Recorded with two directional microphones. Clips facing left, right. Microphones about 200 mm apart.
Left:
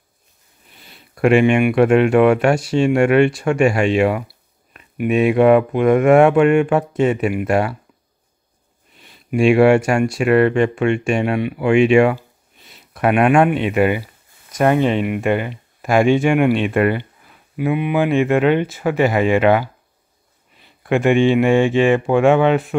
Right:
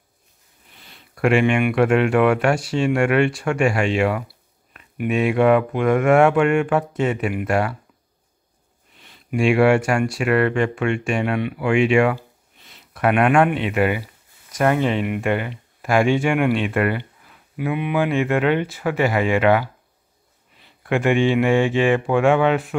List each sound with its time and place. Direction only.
1.1 s speech: 20° left (ahead or behind)
9.0 s speech: 20° left (ahead or behind)
20.8 s speech: 25° left (ahead or behind)